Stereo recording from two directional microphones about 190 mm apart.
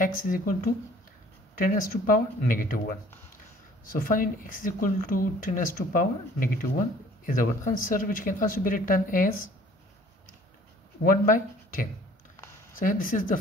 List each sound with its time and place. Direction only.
0.0 s speech: 45° left (ahead or behind)
1.6 s speech: 45° left (ahead or behind)
3.8 s speech: 50° left (ahead or behind)
11.0 s speech: 50° left (ahead or behind)